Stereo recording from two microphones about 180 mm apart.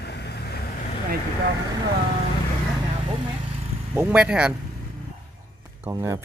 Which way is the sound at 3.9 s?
10° right (ahead or behind).